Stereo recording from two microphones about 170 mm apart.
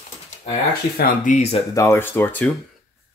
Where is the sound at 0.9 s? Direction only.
55° left (ahead or behind).